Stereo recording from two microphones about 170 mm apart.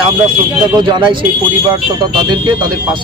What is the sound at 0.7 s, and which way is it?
A man's voice, 25° right (ahead or behind).